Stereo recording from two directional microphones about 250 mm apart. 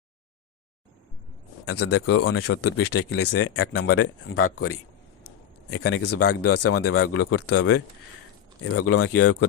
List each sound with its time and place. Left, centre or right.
1.6 s speech: left
8.6 s speech: left